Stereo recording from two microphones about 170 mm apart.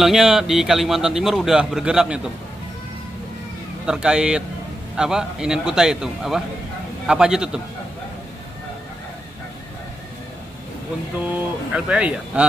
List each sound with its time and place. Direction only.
0.0 s a man's voice: centre (ahead or behind)
3.8 s a man's voice: 5° right (ahead or behind)
11.3 s speech: 5° right (ahead or behind)